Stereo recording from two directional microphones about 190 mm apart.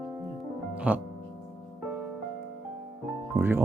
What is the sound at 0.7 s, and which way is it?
Music, 5° right (ahead or behind).